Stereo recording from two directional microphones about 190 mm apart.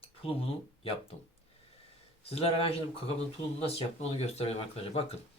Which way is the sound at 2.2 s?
30° left (ahead or behind).